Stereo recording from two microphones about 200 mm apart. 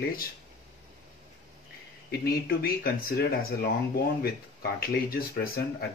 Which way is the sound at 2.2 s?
50° left (ahead or behind).